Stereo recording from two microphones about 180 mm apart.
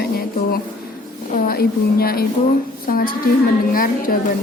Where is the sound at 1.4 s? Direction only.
55° left (ahead or behind).